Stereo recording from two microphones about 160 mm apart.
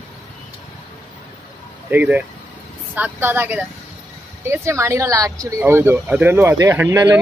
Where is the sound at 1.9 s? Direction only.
10° right (ahead or behind).